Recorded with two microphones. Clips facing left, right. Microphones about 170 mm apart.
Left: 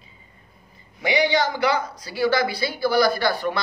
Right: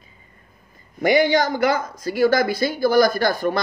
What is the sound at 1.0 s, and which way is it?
Speech, 50° right (ahead or behind).